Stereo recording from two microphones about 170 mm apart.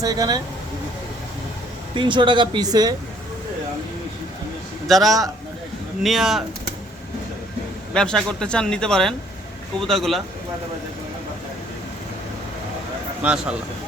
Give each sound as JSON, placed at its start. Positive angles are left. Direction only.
{"t": 0.0, "sound": "speech", "side_deg": -20}
{"t": 2.0, "sound": "speech", "side_deg": -30}
{"t": 4.9, "sound": "speech", "side_deg": 0}
{"t": 7.9, "sound": "speech", "side_deg": 5}
{"t": 13.2, "sound": "speech", "side_deg": -5}